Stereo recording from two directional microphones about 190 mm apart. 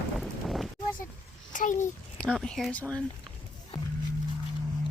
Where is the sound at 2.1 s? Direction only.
5° left (ahead or behind).